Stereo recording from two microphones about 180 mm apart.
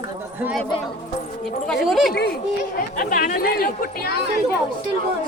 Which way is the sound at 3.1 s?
55° left (ahead or behind).